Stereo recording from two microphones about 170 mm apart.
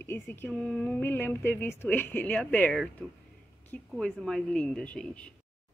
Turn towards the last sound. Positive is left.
turn(degrees=5)  # may be behind; listen again after turning